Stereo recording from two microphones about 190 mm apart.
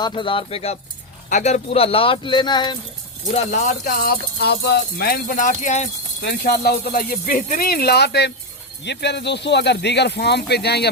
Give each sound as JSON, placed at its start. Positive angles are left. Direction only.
{"t": 0.0, "sound": "speech", "side_deg": 25}
{"t": 3.3, "sound": "speech", "side_deg": 40}
{"t": 6.2, "sound": "speech", "side_deg": 55}